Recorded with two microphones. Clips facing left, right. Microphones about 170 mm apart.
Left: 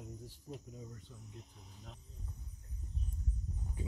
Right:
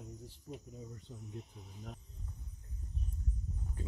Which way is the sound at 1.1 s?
25° right (ahead or behind).